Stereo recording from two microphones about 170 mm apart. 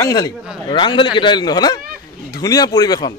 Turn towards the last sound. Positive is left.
turn(degrees=20)  # may be behind; listen again after turning